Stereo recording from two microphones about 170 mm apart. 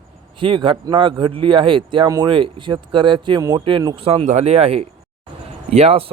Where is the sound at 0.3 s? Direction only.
30° right (ahead or behind).